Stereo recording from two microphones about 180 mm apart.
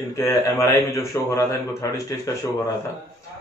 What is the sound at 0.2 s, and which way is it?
A man's voice, 15° left (ahead or behind).